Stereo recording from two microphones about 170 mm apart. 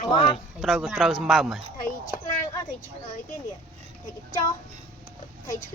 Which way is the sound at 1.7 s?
55° left (ahead or behind).